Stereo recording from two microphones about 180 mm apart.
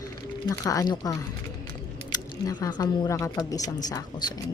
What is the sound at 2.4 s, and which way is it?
A woman's voice, 20° left (ahead or behind).